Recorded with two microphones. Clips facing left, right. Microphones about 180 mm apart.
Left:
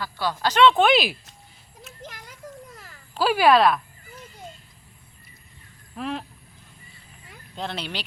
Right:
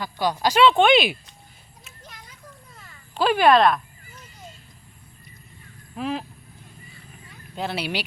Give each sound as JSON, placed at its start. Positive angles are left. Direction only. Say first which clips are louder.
{"t": 0.0, "sound": "speech", "louder": "right 3 dB", "side_deg": -15}
{"t": 2.0, "sound": "a sound", "louder": "left 5 dB", "side_deg": 90}
{"t": 3.2, "sound": "speech", "louder": "right 1 dB", "side_deg": 5}
{"t": 6.0, "sound": "speech", "louder": "right 2 dB", "side_deg": 0}
{"t": 7.5, "sound": "speech", "louder": "right 4 dB", "side_deg": -5}